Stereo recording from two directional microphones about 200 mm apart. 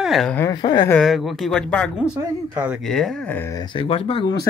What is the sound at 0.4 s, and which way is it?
Speech, 20° left (ahead or behind).